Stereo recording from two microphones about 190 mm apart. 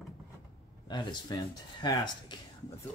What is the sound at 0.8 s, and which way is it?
Speech, 25° left (ahead or behind).